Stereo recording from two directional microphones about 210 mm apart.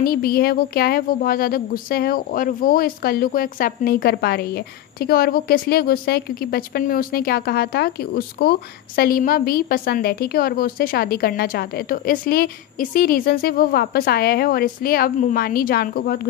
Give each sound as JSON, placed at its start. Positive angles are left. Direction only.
{"t": 0.0, "sound": "a woman's voice", "side_deg": 45}